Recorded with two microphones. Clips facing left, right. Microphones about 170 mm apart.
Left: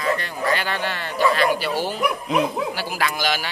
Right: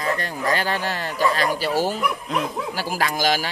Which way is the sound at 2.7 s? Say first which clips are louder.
Right 1 dB; 40° right (ahead or behind).